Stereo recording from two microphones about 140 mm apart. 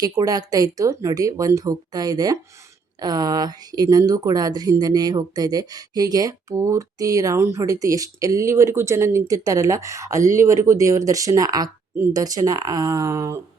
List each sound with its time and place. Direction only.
0.0 s speech: 25° right (ahead or behind)